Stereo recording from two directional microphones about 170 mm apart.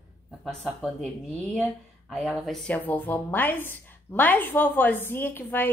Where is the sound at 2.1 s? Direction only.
Centre (ahead or behind).